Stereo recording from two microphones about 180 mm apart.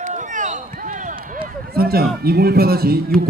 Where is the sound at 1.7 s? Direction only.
55° right (ahead or behind).